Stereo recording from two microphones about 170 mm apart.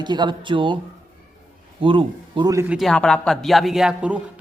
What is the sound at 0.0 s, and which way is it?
Speech, 25° right (ahead or behind).